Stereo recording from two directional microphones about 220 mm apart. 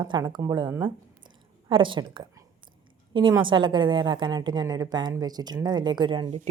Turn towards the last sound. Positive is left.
turn(degrees=-25)  # may be behind; listen again after turning